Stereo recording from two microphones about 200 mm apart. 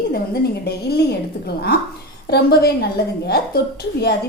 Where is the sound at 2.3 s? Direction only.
50° left (ahead or behind).